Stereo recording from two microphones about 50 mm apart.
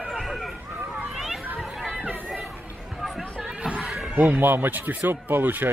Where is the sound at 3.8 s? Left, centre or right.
Centre.